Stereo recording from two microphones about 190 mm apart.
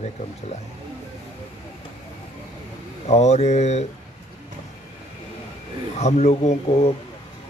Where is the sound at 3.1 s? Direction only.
35° left (ahead or behind).